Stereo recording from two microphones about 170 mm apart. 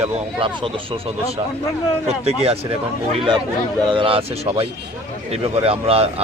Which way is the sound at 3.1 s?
25° right (ahead or behind).